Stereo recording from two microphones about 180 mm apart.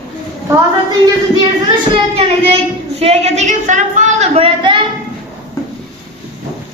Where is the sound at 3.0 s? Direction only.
35° right (ahead or behind).